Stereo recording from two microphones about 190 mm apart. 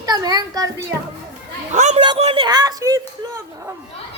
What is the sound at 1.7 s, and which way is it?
A man's voice, 40° right (ahead or behind).